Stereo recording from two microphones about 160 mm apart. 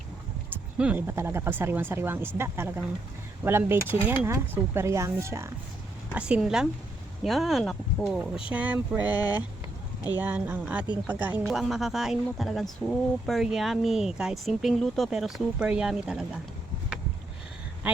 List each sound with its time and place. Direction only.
0.8 s speech: 10° right (ahead or behind)
6.1 s speech: 5° right (ahead or behind)
17.8 s speech: 10° right (ahead or behind)